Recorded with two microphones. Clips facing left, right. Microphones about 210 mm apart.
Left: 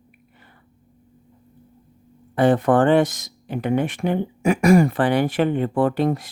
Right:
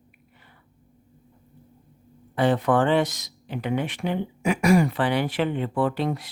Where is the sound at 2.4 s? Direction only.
50° left (ahead or behind).